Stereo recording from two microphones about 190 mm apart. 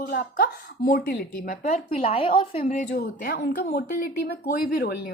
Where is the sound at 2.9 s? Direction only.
55° left (ahead or behind).